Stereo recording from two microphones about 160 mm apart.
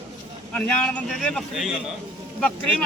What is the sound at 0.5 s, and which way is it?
A man's voice, 5° left (ahead or behind).